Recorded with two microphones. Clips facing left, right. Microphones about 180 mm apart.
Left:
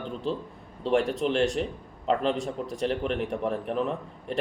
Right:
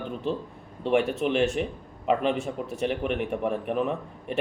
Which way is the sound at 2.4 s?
35° left (ahead or behind).